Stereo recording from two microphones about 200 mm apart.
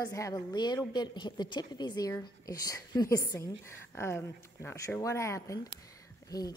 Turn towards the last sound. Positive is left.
turn(degrees=20)  # may be behind; listen again after turning